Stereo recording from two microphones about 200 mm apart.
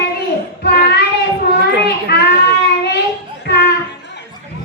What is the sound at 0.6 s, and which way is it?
Child singing, 55° left (ahead or behind).